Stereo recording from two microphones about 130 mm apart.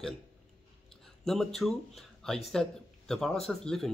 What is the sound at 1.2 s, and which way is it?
Speech, 5° left (ahead or behind).